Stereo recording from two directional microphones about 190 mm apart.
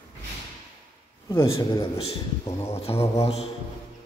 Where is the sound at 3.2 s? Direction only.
30° left (ahead or behind).